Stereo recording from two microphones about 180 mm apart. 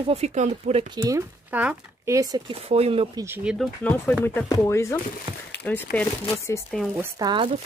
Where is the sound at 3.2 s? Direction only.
10° right (ahead or behind).